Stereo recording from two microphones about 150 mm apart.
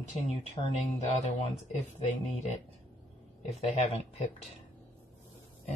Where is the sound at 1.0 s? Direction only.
45° left (ahead or behind).